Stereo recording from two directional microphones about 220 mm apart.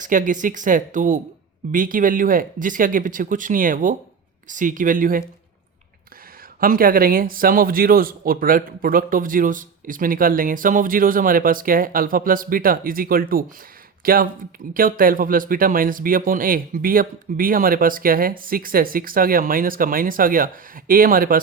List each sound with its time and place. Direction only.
0.0 s a man's voice: 35° right (ahead or behind)
6.6 s a man's voice: 40° right (ahead or behind)